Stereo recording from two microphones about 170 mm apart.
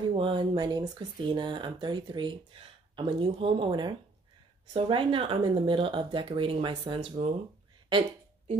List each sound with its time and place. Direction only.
0.1 s speech: 30° right (ahead or behind)